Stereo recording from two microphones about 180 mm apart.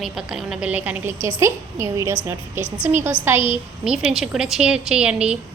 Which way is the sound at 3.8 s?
5° right (ahead or behind).